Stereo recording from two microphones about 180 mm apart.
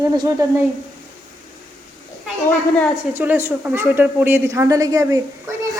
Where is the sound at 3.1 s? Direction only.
10° right (ahead or behind).